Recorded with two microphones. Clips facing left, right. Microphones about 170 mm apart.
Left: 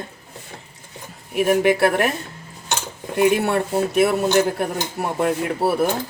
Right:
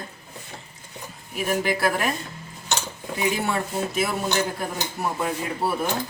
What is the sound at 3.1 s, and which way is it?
A man's voice, 65° left (ahead or behind).